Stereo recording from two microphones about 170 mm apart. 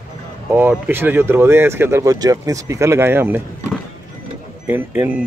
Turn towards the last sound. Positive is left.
turn(degrees=-10)  # may be behind; listen again after turning